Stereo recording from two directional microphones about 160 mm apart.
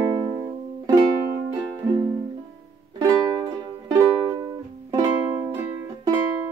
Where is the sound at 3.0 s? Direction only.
25° right (ahead or behind).